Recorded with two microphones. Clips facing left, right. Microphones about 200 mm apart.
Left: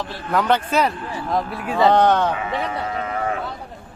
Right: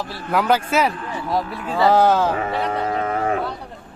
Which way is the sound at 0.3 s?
5° right (ahead or behind).